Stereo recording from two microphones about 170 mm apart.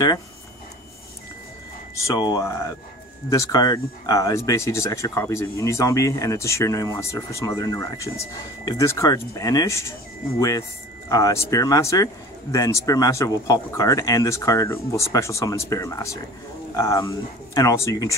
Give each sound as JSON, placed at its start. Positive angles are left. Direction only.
{"t": 2.0, "sound": "speech", "side_deg": 25}
{"t": 11.1, "sound": "speech", "side_deg": 20}